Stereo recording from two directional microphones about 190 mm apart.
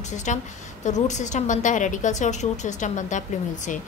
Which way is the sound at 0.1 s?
40° left (ahead or behind).